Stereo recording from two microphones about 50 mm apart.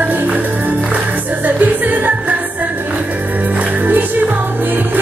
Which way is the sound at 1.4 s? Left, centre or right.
Right.